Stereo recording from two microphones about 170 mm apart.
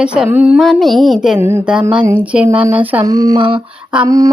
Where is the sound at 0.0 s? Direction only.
5° right (ahead or behind).